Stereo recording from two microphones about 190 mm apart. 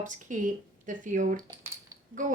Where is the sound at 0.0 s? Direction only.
45° right (ahead or behind).